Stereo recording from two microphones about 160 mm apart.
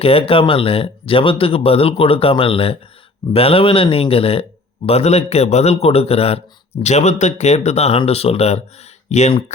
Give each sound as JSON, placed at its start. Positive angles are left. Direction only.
{"t": 0.0, "sound": "speech", "side_deg": 35}